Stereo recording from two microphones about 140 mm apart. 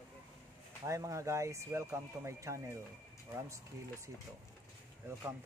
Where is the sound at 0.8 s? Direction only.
20° right (ahead or behind).